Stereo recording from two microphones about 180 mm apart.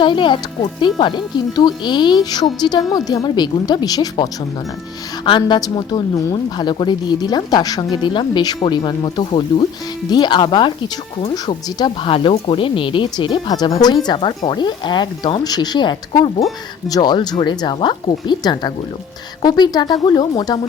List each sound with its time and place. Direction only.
0.0 s a woman's voice: 25° left (ahead or behind)